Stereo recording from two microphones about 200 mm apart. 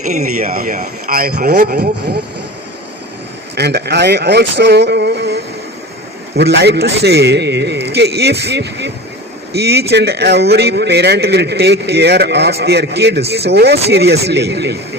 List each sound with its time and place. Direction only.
0.0 s speech: 35° right (ahead or behind)
3.5 s a man's voice: 55° right (ahead or behind)